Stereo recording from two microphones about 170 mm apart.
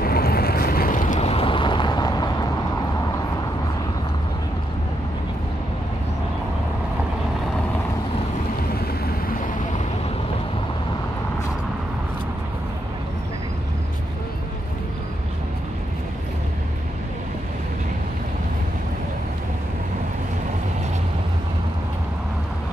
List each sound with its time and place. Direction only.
0.0 s vehicle: 65° left (ahead or behind); by 2.3 s 25° left (ahead or behind)